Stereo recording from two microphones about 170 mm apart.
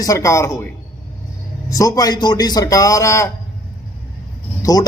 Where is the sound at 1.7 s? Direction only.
20° left (ahead or behind).